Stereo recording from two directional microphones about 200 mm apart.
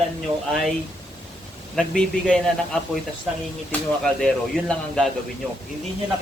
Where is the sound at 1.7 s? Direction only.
5° left (ahead or behind).